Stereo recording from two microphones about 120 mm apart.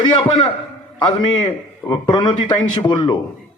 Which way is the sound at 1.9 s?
35° left (ahead or behind).